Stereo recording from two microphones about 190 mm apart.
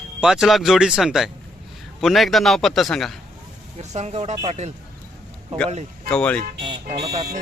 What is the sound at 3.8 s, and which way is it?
Speech, 35° right (ahead or behind).